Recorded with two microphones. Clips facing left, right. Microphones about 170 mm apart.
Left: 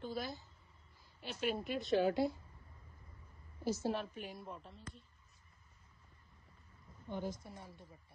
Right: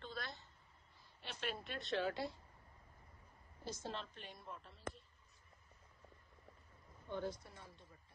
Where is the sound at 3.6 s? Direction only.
10° left (ahead or behind).